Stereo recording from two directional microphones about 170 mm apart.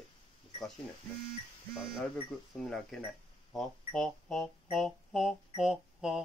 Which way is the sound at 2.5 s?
Centre (ahead or behind).